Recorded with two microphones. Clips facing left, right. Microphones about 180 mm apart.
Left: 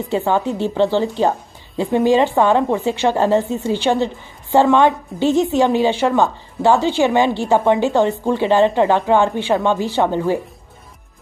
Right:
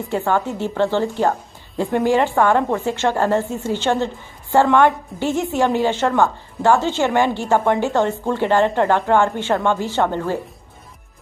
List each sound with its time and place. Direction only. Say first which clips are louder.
0.1 s a woman's voice: left 2 dB; 15° left (ahead or behind)